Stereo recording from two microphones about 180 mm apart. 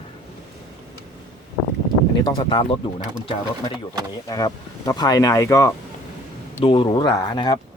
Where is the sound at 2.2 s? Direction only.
30° left (ahead or behind).